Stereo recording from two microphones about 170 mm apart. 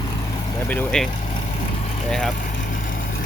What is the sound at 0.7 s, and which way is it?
Speech, 10° left (ahead or behind).